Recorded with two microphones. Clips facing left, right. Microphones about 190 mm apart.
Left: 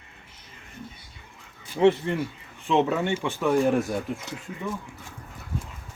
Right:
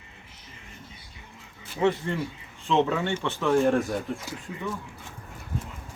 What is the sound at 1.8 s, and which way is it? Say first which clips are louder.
Speech: left 4 dB; 25° left (ahead or behind).